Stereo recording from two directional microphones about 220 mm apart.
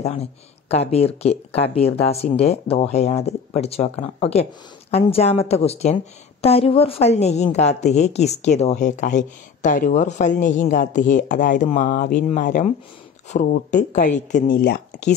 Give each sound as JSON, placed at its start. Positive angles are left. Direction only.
{"t": 0.0, "sound": "a woman's voice", "side_deg": 30}